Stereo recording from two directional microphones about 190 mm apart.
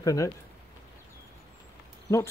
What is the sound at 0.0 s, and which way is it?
Speech, 15° left (ahead or behind).